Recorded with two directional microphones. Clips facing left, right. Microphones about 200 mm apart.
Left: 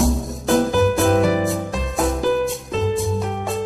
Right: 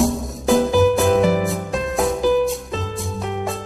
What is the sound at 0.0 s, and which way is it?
Music, centre (ahead or behind).